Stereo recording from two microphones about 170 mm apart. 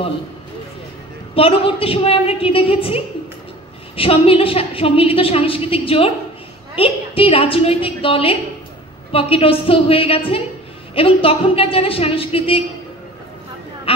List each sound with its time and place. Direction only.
1.3 s a woman's voice: 35° left (ahead or behind)
13.9 s speech: 35° left (ahead or behind)